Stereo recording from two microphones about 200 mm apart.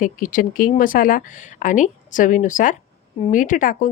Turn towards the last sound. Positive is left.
turn(degrees=40)  # may be behind; listen again after turning